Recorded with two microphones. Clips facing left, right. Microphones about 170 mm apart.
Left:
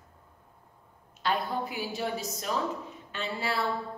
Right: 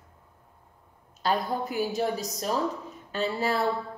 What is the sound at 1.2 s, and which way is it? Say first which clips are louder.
A woman's voice: right 3 dB; 45° right (ahead or behind).